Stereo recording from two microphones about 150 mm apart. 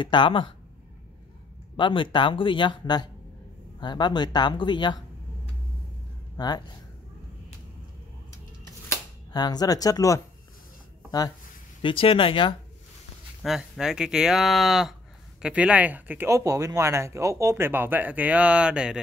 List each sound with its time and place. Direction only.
0.0 s speech: 30° left (ahead or behind)
1.8 s speech: 30° left (ahead or behind)
6.3 s speech: 25° left (ahead or behind)
8.8 s speech: 25° left (ahead or behind)
11.8 s speech: 35° left (ahead or behind)
13.4 s speech: 5° right (ahead or behind)